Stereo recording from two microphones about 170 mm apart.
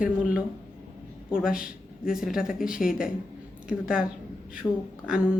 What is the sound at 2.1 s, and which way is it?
Speech, centre (ahead or behind).